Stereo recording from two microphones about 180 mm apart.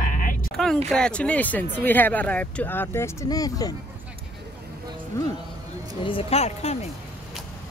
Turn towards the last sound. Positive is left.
turn(degrees=35)  # may be behind; listen again after turning